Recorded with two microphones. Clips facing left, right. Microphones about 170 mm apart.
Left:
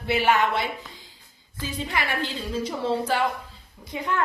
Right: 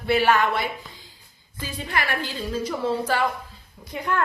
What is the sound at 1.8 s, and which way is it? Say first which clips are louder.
A woman's voice: right 2 dB; 20° left (ahead or behind).